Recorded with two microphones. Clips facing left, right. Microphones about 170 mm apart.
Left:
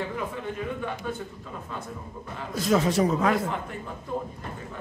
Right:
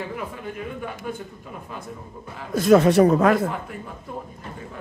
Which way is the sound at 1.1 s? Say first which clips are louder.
Right 3 dB; 5° right (ahead or behind).